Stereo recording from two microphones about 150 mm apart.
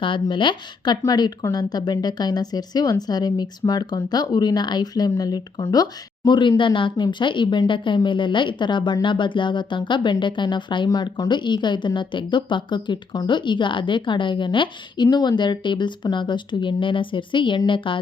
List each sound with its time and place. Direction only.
0.0 s speech: 35° left (ahead or behind)